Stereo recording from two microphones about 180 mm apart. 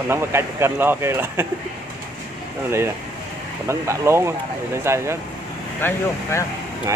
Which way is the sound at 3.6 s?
15° right (ahead or behind).